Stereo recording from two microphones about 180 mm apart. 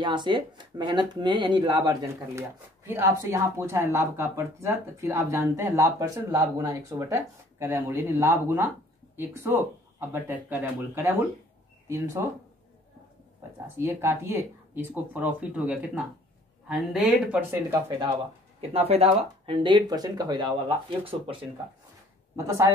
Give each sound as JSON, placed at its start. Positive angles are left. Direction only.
{"t": 0.0, "sound": "speech", "side_deg": -25}
{"t": 13.7, "sound": "speech", "side_deg": -15}
{"t": 18.6, "sound": "speech", "side_deg": -35}
{"t": 22.3, "sound": "speech", "side_deg": -15}